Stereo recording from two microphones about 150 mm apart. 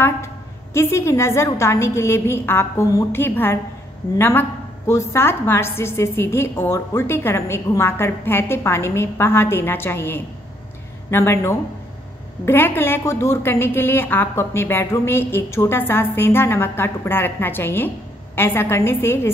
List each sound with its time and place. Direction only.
0.7 s a woman's voice: 15° left (ahead or behind)